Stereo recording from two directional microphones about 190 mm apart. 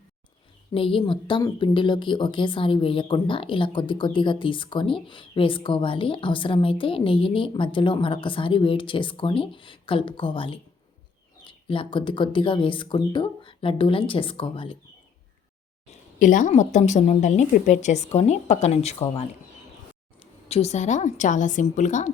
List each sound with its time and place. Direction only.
0.7 s speech: 30° left (ahead or behind)
15.9 s speech: 45° left (ahead or behind)
20.5 s speech: 35° left (ahead or behind)